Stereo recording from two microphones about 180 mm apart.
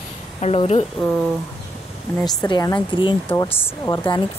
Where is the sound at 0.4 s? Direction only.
35° left (ahead or behind).